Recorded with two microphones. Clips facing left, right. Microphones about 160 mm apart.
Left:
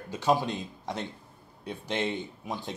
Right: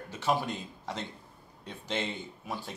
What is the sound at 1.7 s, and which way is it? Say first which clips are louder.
Speech: left 4 dB; 10° left (ahead or behind).